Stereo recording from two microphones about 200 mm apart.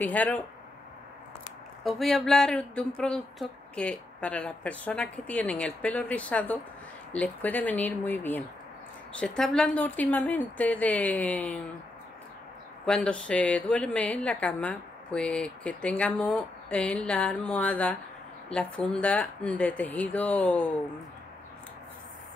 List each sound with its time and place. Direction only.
0.0 s a woman's voice: 10° left (ahead or behind)
1.9 s a woman's voice: centre (ahead or behind)
12.8 s a woman's voice: 5° left (ahead or behind)